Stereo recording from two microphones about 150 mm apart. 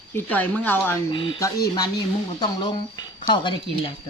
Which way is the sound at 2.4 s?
25° left (ahead or behind).